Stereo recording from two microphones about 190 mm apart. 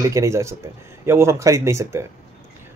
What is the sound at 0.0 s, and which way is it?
Speech, 15° right (ahead or behind).